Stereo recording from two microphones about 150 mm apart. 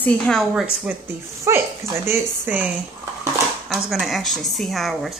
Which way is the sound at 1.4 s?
15° right (ahead or behind).